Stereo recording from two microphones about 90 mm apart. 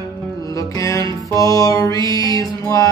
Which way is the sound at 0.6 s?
35° left (ahead or behind).